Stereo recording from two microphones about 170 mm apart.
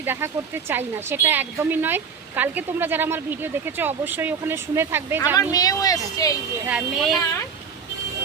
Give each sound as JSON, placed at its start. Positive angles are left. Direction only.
{"t": 0.0, "sound": "speech", "side_deg": -15}
{"t": 5.4, "sound": "a woman's voice", "side_deg": 20}
{"t": 6.7, "sound": "speech", "side_deg": -5}